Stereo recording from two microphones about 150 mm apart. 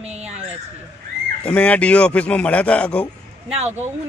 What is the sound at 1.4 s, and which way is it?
Speech, 10° left (ahead or behind).